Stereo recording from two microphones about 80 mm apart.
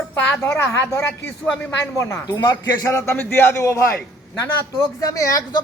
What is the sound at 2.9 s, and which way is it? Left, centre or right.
A man's voice, left.